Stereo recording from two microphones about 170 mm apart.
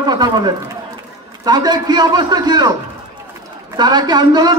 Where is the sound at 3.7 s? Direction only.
25° right (ahead or behind).